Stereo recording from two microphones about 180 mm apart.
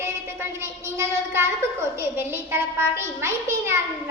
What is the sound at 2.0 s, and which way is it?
A child's voice, 15° right (ahead or behind).